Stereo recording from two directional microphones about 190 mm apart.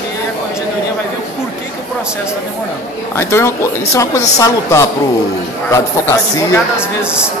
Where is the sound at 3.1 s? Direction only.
15° left (ahead or behind).